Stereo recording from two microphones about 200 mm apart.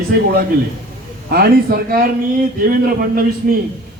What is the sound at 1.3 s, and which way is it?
A man's voice, 45° right (ahead or behind).